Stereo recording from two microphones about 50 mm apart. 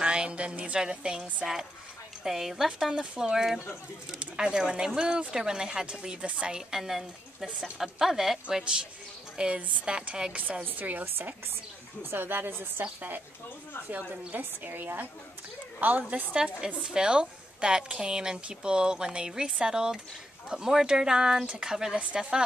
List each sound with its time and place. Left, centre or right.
0.0 s a woman's voice: centre; by 12.8 s right
13.8 s a woman's voice: right
16.6 s a woman's voice: centre